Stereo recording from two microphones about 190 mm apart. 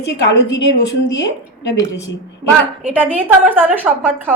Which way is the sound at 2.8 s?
10° right (ahead or behind).